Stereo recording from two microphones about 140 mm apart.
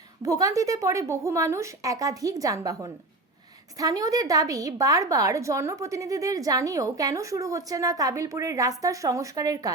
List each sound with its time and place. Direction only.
0.3 s a woman's voice: 25° right (ahead or behind)